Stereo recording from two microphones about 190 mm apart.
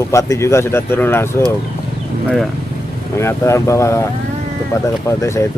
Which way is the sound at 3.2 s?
15° left (ahead or behind).